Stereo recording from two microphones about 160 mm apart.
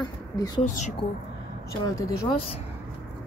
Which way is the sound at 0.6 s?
50° left (ahead or behind).